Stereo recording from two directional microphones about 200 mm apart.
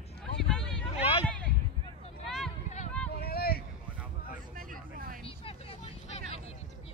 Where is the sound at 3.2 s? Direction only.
50° left (ahead or behind).